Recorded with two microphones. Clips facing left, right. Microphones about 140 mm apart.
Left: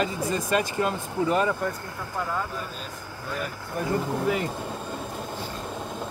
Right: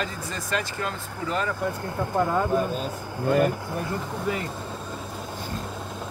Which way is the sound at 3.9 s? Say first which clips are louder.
Left 6 dB; 5° left (ahead or behind).